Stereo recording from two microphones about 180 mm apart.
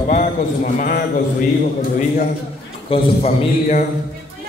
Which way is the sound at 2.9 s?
35° left (ahead or behind).